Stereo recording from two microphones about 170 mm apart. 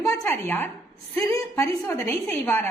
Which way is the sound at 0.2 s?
10° left (ahead or behind).